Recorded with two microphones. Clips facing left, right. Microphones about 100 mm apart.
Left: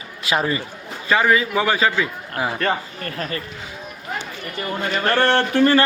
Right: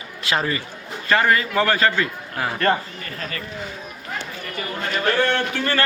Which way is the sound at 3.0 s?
50° left (ahead or behind).